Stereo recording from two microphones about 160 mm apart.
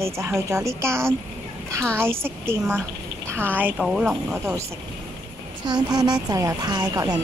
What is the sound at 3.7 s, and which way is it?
Speech, centre (ahead or behind).